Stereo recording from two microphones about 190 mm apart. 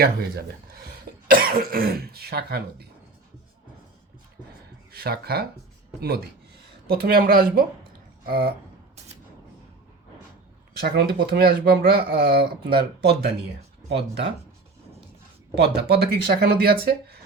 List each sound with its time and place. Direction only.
0.0 s speech: 55° right (ahead or behind)
4.9 s speech: 55° right (ahead or behind)
10.8 s speech: 60° right (ahead or behind)
15.5 s speech: 60° right (ahead or behind)